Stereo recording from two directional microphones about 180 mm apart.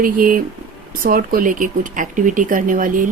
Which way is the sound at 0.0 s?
50° right (ahead or behind).